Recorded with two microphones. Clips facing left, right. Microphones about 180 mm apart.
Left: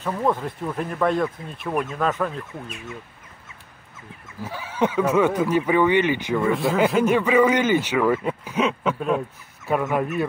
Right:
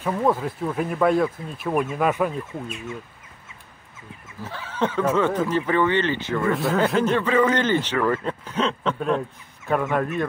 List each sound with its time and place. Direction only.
0.0 s speech: 5° right (ahead or behind)
4.4 s a man's voice: 10° left (ahead or behind)
6.4 s a man's voice: centre (ahead or behind)